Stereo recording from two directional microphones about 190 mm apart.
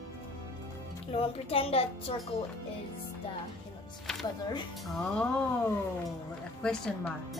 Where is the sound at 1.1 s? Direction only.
30° left (ahead or behind).